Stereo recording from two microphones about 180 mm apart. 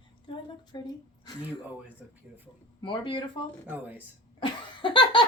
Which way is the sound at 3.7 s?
10° right (ahead or behind).